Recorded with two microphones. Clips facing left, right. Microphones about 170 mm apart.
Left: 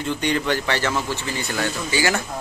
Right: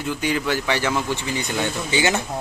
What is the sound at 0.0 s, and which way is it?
Speech, 5° right (ahead or behind).